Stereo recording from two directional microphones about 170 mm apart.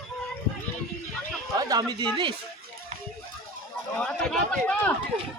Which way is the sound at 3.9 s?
5° left (ahead or behind).